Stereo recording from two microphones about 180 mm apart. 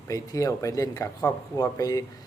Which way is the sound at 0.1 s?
20° left (ahead or behind).